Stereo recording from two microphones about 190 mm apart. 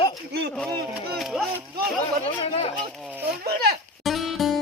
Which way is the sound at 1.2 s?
Centre (ahead or behind).